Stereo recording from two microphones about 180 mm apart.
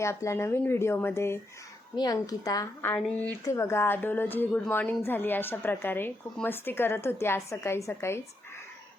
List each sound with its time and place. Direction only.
0.0 s a woman's voice: 15° left (ahead or behind)